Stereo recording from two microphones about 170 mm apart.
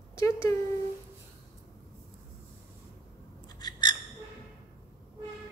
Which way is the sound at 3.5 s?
25° left (ahead or behind).